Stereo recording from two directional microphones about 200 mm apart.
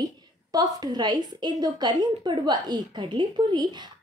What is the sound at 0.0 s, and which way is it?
A woman's voice, 20° right (ahead or behind).